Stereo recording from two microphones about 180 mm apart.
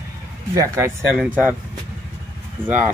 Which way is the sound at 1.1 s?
5° right (ahead or behind).